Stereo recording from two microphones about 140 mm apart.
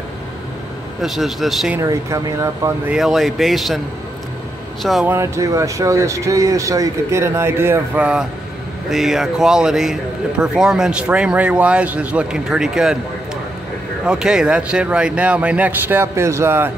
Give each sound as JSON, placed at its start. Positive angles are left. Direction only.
{"t": 1.0, "sound": "speech", "side_deg": 0}
{"t": 1.8, "sound": "speech", "side_deg": -20}
{"t": 2.9, "sound": "speech", "side_deg": 0}
{"t": 5.0, "sound": "speech", "side_deg": -20}
{"t": 14.0, "sound": "speech", "side_deg": -5}